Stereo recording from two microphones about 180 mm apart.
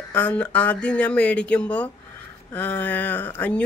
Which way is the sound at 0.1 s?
5° left (ahead or behind).